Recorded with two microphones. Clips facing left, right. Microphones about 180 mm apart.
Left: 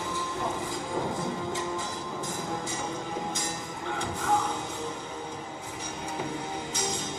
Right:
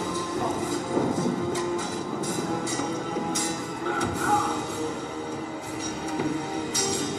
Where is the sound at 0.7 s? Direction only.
40° right (ahead or behind).